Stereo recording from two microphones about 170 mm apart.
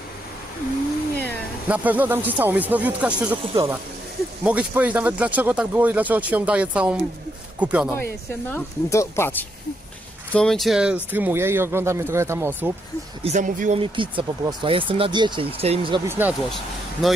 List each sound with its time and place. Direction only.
1.7 s speech: 10° right (ahead or behind)
3.5 s speech: 20° right (ahead or behind)
4.4 s speech: 5° right (ahead or behind)
7.9 s speech: 10° left (ahead or behind)
10.3 s speech: 5° left (ahead or behind)
13.2 s speech: 45° right (ahead or behind)
13.7 s speech: 30° right (ahead or behind)
16.1 s speech: 10° right (ahead or behind)
16.4 s speech: centre (ahead or behind)